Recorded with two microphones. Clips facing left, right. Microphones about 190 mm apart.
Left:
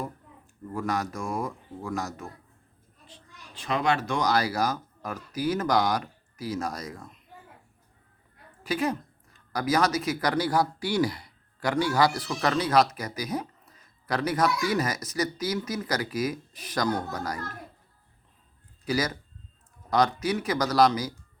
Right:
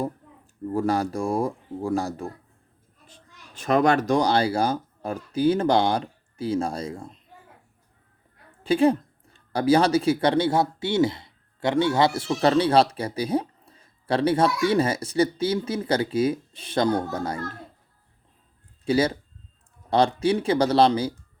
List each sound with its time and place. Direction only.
0.7 s speech: 30° right (ahead or behind)
3.1 s speech: 45° right (ahead or behind); by 7.2 s 30° right (ahead or behind)
8.6 s speech: 30° right (ahead or behind)
18.9 s speech: 30° right (ahead or behind)